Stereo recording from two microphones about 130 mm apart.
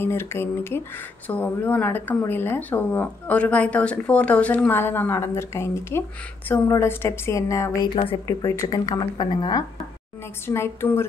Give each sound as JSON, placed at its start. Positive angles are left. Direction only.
{"t": 0.0, "sound": "a woman's voice", "side_deg": 20}
{"t": 7.9, "sound": "speech", "side_deg": 45}
{"t": 8.3, "sound": "a woman's voice", "side_deg": 25}
{"t": 10.4, "sound": "a woman's voice", "side_deg": 20}